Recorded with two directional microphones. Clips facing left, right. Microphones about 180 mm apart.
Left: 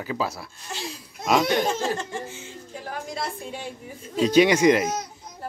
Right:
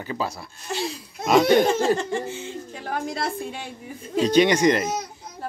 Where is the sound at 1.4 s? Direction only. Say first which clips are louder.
Right 6 dB; 65° right (ahead or behind).